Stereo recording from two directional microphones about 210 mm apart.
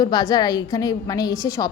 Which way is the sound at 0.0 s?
20° left (ahead or behind).